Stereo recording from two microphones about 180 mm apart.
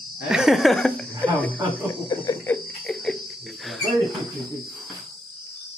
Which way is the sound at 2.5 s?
5° left (ahead or behind).